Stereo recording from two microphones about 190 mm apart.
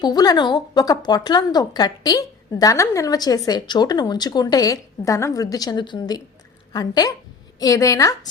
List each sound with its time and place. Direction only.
0.0 s a woman's voice: 20° left (ahead or behind)